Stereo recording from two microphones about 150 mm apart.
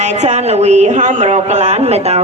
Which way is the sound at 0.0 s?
50° right (ahead or behind).